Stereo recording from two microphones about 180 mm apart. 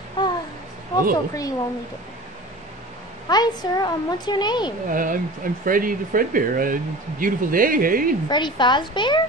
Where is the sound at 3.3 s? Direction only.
20° left (ahead or behind).